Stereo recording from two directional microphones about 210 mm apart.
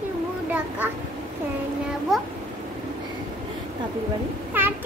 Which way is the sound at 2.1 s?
Centre (ahead or behind).